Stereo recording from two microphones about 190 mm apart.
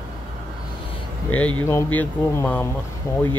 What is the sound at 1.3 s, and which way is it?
Speech, 10° left (ahead or behind).